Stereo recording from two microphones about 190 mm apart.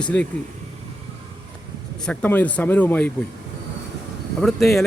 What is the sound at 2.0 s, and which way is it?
Speech, 5° left (ahead or behind).